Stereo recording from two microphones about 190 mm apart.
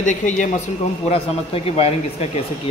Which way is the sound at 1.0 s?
30° left (ahead or behind).